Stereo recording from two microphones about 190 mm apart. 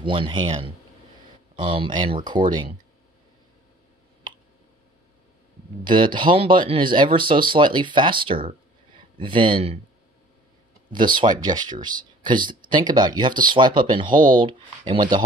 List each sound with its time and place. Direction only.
0.0 s speech: 25° right (ahead or behind)
1.6 s speech: 25° right (ahead or behind)
5.9 s speech: 25° right (ahead or behind)
10.9 s speech: 25° right (ahead or behind)